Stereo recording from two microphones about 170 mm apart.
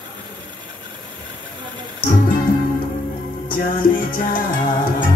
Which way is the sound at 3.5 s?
55° left (ahead or behind).